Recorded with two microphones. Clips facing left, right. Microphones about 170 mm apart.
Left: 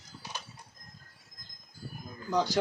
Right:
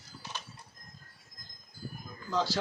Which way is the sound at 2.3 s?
15° left (ahead or behind).